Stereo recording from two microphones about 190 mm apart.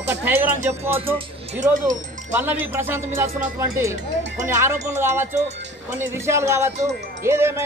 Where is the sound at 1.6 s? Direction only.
40° right (ahead or behind).